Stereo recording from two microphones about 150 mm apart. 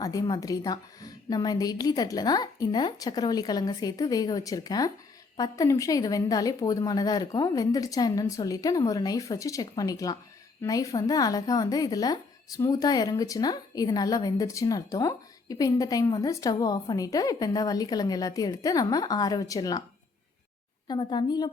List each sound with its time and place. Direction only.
0.0 s speech: 25° left (ahead or behind)
20.8 s speech: 30° left (ahead or behind)